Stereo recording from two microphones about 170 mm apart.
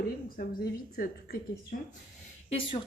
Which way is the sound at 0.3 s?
60° left (ahead or behind).